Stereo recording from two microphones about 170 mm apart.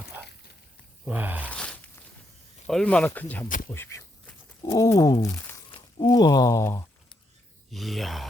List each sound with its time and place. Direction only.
1.0 s speech: 10° right (ahead or behind)
1.5 s a sound: 5° left (ahead or behind)
2.6 s speech: 5° left (ahead or behind)
7.7 s speech: centre (ahead or behind)